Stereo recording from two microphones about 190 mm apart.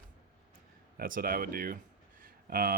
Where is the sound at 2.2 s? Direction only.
50° right (ahead or behind).